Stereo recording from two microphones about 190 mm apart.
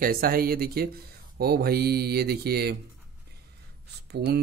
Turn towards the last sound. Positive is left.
turn(degrees=-55)  # may be behind; listen again after turning